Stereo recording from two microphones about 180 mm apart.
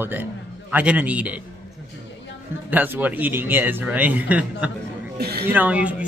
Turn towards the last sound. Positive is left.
turn(degrees=-10)  # may be behind; listen again after turning